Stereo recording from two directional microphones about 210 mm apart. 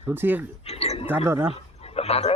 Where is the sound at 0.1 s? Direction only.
10° right (ahead or behind).